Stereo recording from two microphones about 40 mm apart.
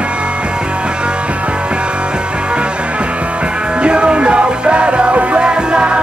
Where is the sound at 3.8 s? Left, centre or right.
Right.